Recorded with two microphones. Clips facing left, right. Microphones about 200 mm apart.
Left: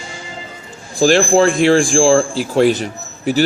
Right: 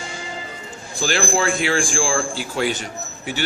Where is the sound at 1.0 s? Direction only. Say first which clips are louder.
Left 10 dB; 40° left (ahead or behind).